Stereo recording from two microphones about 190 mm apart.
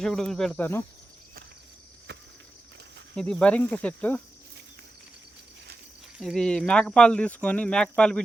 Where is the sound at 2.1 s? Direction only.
60° right (ahead or behind).